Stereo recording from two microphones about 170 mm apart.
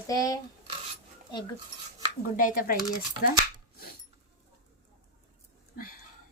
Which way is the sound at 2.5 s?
55° left (ahead or behind).